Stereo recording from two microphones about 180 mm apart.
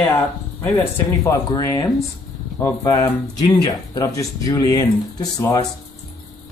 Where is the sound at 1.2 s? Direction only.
20° left (ahead or behind).